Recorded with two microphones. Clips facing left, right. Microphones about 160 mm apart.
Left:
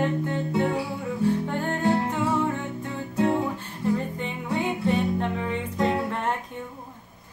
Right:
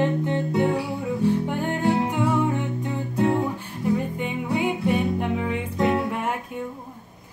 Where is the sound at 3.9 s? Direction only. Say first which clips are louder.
Right 3 dB; 10° right (ahead or behind).